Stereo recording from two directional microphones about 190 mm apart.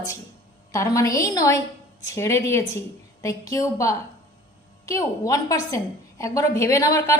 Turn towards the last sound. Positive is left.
turn(degrees=15)  # may be behind; listen again after turning